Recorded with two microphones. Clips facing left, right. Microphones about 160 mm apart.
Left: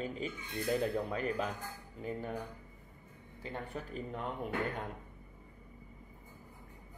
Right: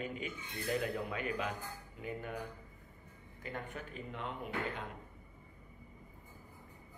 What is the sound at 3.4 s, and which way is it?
Speech, 30° left (ahead or behind).